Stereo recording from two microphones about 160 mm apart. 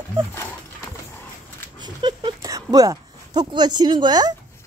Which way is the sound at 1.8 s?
30° right (ahead or behind).